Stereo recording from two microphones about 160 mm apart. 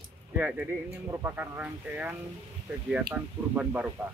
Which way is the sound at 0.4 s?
10° right (ahead or behind).